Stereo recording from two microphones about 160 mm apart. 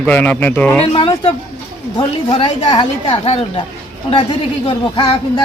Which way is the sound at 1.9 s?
25° left (ahead or behind).